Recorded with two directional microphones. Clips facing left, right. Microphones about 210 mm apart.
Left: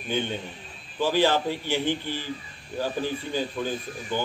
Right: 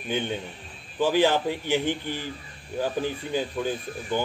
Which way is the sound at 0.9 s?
15° right (ahead or behind).